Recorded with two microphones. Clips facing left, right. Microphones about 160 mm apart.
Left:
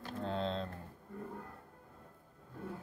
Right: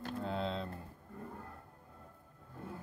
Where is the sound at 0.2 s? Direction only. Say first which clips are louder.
Left 2 dB; 5° right (ahead or behind).